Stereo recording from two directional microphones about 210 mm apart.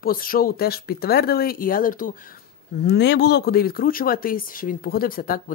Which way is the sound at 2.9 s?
55° left (ahead or behind).